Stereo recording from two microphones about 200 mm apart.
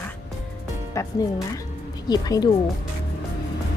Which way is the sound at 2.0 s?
20° left (ahead or behind).